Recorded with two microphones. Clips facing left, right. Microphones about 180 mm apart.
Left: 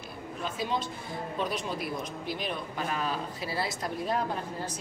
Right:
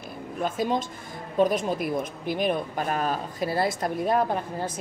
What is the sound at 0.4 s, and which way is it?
A woman's voice, 50° right (ahead or behind).